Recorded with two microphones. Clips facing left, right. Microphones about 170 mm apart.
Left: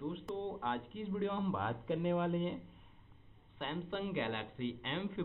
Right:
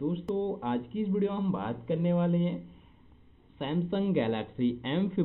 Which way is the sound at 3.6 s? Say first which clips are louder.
Right 10 dB; 20° right (ahead or behind).